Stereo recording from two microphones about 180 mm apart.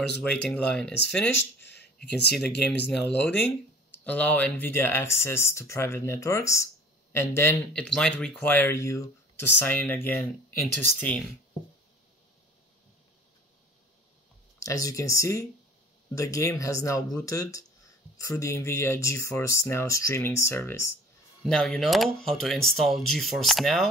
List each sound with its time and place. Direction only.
0.2 s speech: 5° left (ahead or behind)
1.3 s speech: 75° left (ahead or behind)
2.6 s speech: 10° left (ahead or behind)
14.6 s speech: 20° left (ahead or behind)
21.5 s speech: centre (ahead or behind)